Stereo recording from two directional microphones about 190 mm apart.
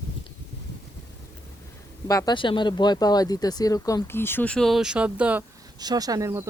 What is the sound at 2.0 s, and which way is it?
Speech, 20° left (ahead or behind).